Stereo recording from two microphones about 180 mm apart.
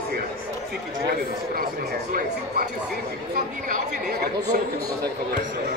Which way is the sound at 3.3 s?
60° right (ahead or behind).